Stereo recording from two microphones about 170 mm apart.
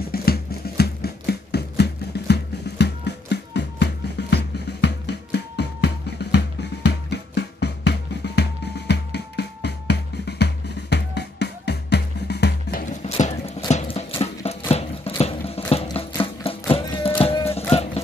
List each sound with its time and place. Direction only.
0.1 s music: 65° left (ahead or behind)
12.8 s clip-clop: 45° left (ahead or behind)
17.5 s music: 15° left (ahead or behind)